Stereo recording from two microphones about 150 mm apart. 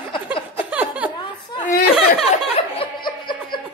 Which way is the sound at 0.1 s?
35° left (ahead or behind).